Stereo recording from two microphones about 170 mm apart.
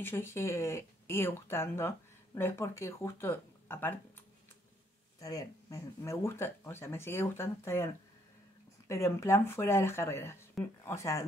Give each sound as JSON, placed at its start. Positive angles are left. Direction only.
{"t": 0.0, "sound": "speech", "side_deg": 15}
{"t": 5.2, "sound": "speech", "side_deg": 20}